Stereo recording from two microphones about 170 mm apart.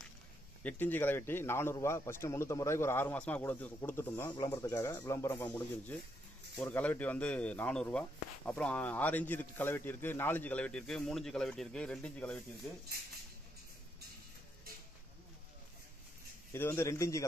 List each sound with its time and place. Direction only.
0.7 s a man's voice: 10° left (ahead or behind)
16.5 s a man's voice: 15° left (ahead or behind)